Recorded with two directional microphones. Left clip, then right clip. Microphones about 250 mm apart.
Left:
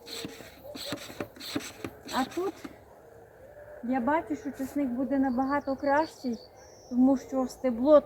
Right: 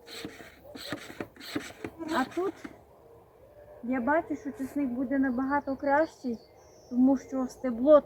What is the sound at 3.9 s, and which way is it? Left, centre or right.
Speech, centre.